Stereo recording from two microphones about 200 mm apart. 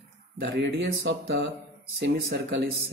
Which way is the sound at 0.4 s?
60° right (ahead or behind).